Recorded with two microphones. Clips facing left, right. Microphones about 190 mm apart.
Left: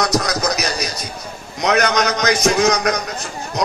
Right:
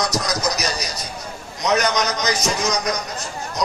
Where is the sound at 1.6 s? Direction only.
60° left (ahead or behind).